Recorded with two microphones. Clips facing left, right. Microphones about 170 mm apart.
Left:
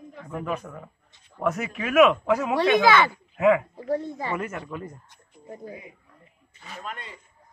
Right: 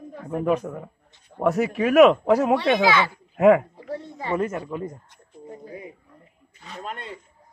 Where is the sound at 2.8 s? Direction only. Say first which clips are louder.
Left 1 dB; 55° left (ahead or behind).